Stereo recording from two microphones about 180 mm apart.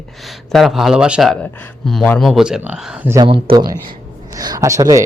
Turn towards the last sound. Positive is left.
turn(degrees=-15)  # may be behind; listen again after turning